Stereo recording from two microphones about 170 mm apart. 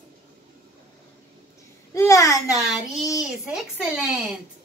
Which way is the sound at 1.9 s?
20° left (ahead or behind).